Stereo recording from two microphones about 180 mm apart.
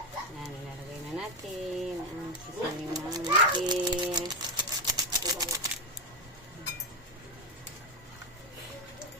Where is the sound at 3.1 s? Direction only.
25° right (ahead or behind).